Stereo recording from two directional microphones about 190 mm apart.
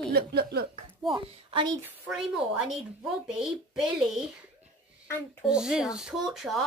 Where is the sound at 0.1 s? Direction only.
55° right (ahead or behind).